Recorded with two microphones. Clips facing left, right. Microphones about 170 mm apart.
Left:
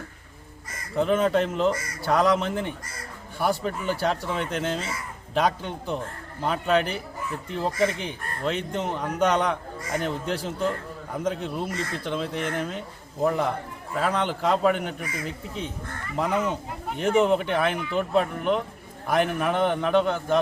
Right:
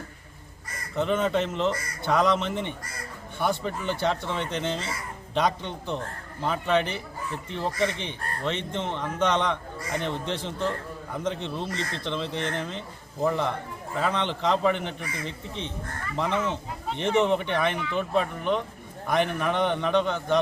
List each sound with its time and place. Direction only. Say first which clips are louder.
0.9 s speech: left 3 dB; 5° left (ahead or behind)